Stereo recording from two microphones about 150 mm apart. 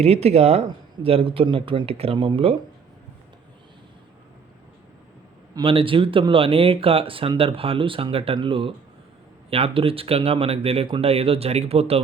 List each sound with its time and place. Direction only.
0.0 s speech: 45° right (ahead or behind)
5.5 s speech: 35° right (ahead or behind)